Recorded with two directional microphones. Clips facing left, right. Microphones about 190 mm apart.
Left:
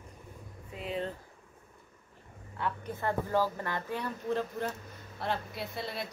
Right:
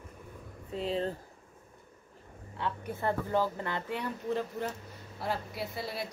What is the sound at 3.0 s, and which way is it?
Speech, 20° right (ahead or behind).